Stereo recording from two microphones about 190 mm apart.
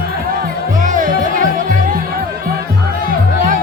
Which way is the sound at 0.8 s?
45° right (ahead or behind).